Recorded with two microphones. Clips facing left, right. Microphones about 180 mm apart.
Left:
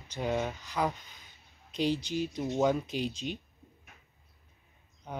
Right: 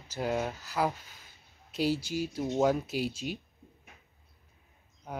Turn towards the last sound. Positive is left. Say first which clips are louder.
# even
turn(degrees=-5)  # may be behind; listen again after turning